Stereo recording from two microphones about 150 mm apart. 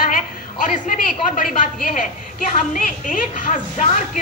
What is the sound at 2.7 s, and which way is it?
A woman's voice, 60° left (ahead or behind).